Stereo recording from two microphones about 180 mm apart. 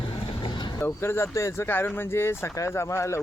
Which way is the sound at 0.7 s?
15° left (ahead or behind).